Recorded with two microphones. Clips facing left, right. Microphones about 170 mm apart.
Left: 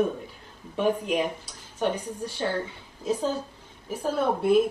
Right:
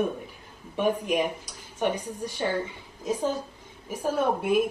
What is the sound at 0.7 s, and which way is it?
Speech, 10° right (ahead or behind).